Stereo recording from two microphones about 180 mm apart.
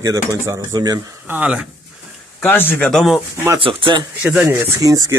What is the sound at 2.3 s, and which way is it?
Speech, 10° left (ahead or behind).